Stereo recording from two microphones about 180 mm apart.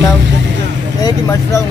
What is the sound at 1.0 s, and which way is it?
Speech, 15° left (ahead or behind).